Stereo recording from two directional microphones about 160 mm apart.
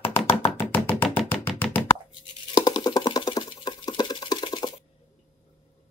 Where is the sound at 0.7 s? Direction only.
10° left (ahead or behind).